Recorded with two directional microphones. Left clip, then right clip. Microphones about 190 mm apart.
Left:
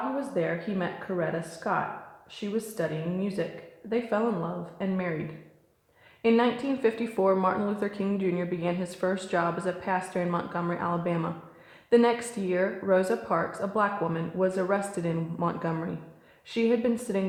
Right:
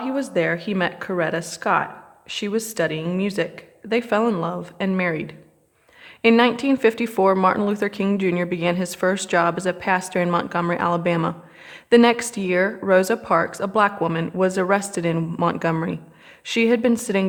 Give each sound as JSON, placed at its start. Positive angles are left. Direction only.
{"t": 0.2, "sound": "speech", "side_deg": -30}
{"t": 6.2, "sound": "speech", "side_deg": -25}